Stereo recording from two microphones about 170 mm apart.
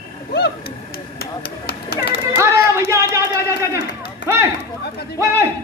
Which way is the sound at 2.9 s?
15° right (ahead or behind).